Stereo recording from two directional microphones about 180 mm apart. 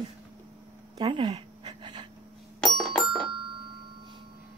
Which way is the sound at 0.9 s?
25° right (ahead or behind).